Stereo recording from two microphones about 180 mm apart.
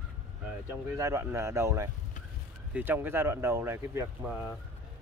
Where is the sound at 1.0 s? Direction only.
15° right (ahead or behind).